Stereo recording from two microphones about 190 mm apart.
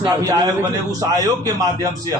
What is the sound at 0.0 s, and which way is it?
A man's voice, 20° right (ahead or behind).